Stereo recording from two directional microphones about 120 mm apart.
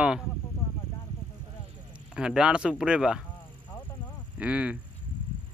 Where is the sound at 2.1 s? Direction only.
5° right (ahead or behind).